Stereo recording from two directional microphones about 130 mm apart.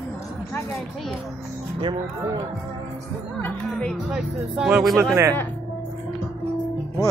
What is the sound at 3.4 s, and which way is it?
Music, 10° left (ahead or behind).